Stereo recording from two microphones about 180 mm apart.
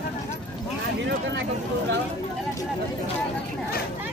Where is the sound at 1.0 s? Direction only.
80° right.